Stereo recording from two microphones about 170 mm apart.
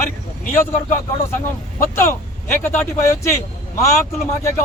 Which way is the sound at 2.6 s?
15° left (ahead or behind).